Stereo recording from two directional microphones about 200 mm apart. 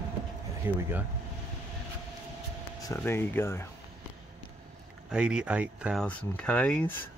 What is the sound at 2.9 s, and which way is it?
Speech, 10° left (ahead or behind).